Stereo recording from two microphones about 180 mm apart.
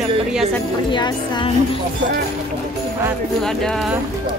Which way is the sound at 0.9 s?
25° left (ahead or behind).